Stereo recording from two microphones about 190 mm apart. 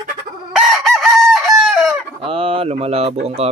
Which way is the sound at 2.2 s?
30° right (ahead or behind).